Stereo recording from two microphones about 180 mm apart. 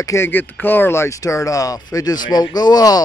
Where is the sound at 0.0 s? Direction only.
15° left (ahead or behind).